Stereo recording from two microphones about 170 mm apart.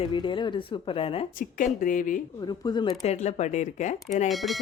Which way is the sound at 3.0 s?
40° left (ahead or behind).